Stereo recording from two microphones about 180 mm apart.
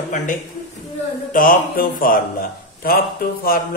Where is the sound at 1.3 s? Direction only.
50° left (ahead or behind).